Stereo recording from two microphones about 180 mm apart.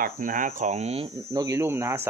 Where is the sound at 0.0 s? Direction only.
50° right (ahead or behind).